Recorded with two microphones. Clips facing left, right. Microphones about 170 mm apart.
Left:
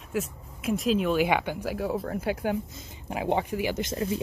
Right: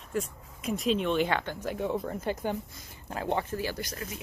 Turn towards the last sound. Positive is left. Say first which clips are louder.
# left 8 dB
turn(degrees=25)  # may be behind; listen again after turning